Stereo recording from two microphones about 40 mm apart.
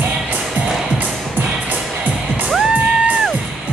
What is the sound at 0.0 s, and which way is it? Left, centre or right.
Music, right.